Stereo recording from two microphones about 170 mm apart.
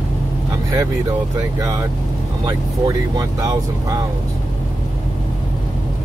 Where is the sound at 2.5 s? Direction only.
25° right (ahead or behind).